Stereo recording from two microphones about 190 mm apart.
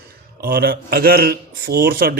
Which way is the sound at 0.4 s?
55° right (ahead or behind).